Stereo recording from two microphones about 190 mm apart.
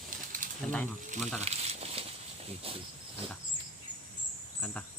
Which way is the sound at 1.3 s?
35° right (ahead or behind).